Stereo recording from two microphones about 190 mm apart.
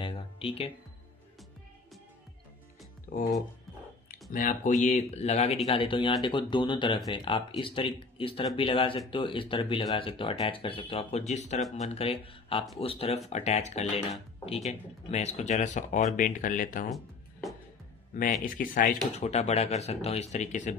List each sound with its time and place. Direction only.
0.0 s a sound: 30° left (ahead or behind)
4.3 s speech: 45° left (ahead or behind)
16.9 s music: centre (ahead or behind)
18.1 s speech: 45° left (ahead or behind)
19.1 s speech: 35° left (ahead or behind)